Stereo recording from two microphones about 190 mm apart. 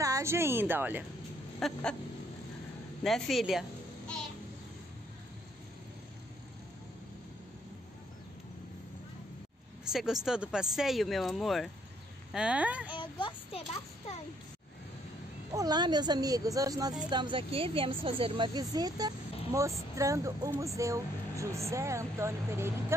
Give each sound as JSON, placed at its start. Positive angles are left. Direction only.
{"t": 0.0, "sound": "a woman's voice", "side_deg": -15}
{"t": 1.6, "sound": "speech", "side_deg": 5}
{"t": 3.0, "sound": "speech", "side_deg": 0}
{"t": 9.9, "sound": "speech", "side_deg": 0}
{"t": 12.9, "sound": "speech", "side_deg": 25}
{"t": 15.5, "sound": "a woman's voice", "side_deg": -20}